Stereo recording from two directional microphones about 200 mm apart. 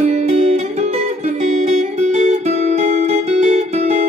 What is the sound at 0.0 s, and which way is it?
Music, 35° right (ahead or behind).